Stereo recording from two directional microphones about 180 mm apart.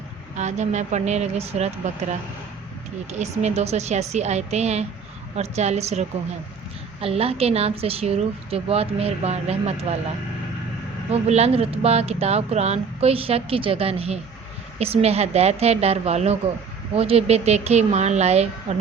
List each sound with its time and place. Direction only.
0.3 s speech: 40° right (ahead or behind)
11.1 s speech: 35° right (ahead or behind)